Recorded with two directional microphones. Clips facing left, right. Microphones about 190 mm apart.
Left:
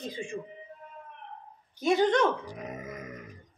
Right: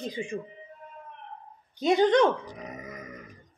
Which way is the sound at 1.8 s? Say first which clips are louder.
Right 3 dB; 20° right (ahead or behind).